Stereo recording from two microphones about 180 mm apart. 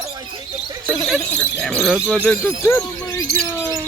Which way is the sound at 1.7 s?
Centre (ahead or behind).